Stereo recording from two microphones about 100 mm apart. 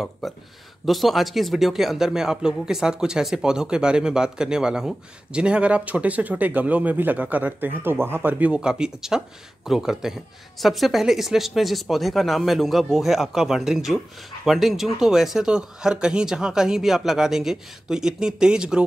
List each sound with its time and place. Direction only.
0.2 s speech: centre (ahead or behind)